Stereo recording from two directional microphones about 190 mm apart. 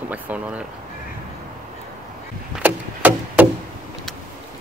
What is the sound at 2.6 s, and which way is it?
Chop, 10° right (ahead or behind).